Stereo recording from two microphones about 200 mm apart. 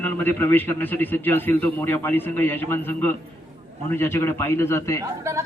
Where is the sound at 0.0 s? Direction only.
10° left (ahead or behind).